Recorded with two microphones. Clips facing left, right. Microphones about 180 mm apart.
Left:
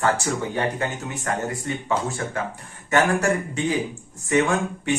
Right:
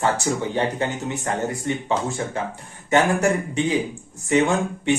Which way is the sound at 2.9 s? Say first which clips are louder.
Right 2 dB; 20° right (ahead or behind).